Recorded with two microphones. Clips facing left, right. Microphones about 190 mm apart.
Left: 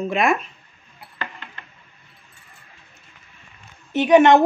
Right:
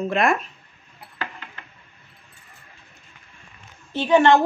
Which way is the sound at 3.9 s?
20° left (ahead or behind).